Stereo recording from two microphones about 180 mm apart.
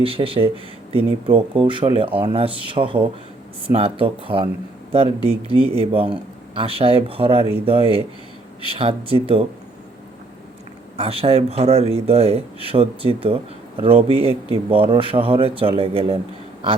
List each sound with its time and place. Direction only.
0.0 s speech: 30° right (ahead or behind)
10.9 s speech: 30° right (ahead or behind)